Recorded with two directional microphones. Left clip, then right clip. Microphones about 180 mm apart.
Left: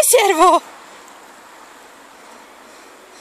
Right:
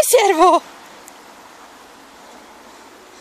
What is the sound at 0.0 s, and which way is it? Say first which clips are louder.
Speech: even; centre (ahead or behind).